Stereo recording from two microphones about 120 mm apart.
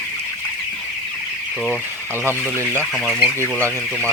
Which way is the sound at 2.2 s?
20° right (ahead or behind).